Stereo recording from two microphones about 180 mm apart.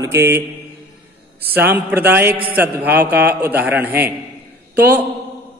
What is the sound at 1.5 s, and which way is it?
A man's voice, 10° right (ahead or behind).